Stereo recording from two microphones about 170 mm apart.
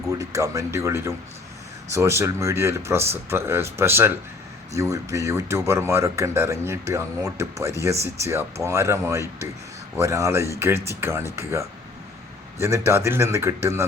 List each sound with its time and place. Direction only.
0.1 s speech: 20° right (ahead or behind)